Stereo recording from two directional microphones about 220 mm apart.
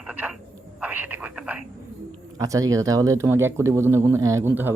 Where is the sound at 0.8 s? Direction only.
10° right (ahead or behind).